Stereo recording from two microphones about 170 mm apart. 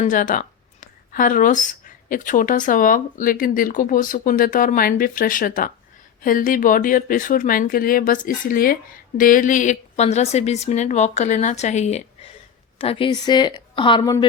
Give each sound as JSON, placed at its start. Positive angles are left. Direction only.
{"t": 0.0, "sound": "a woman's voice", "side_deg": 50}